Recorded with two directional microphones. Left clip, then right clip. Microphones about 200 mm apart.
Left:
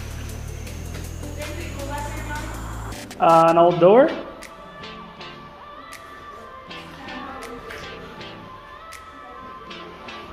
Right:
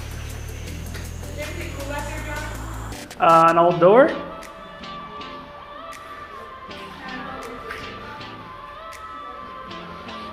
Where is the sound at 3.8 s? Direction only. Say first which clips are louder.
Right 1 dB; 20° left (ahead or behind).